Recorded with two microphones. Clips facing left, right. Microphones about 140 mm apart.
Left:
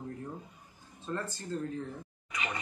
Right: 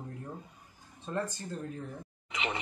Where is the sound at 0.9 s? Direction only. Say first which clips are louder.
Right 2 dB; 15° right (ahead or behind).